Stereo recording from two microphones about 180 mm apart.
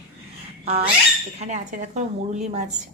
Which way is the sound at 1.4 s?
40° right (ahead or behind).